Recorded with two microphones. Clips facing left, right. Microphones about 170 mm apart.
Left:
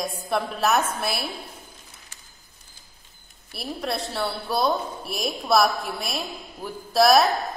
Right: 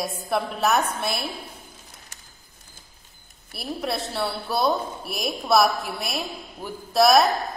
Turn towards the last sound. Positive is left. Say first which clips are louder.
# even
turn(degrees=0)  # may be behind; listen again after turning